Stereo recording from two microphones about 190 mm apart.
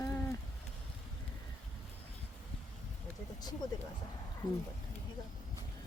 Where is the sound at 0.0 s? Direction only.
15° left (ahead or behind).